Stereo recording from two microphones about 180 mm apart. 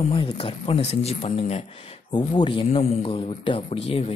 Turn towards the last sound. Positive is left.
turn(degrees=30)  # may be behind; listen again after turning